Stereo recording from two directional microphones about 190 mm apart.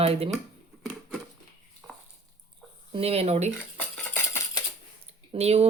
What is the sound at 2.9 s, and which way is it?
Speech, 30° right (ahead or behind).